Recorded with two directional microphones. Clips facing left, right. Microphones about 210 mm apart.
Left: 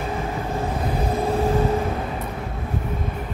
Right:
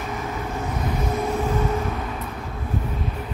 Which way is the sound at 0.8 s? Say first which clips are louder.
Left 1 dB; 30° left (ahead or behind).